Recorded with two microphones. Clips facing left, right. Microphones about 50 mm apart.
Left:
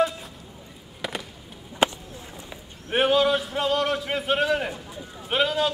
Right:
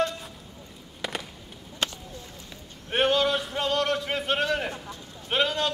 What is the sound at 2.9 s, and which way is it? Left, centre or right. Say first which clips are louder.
A man's voice: left 3 dB; centre.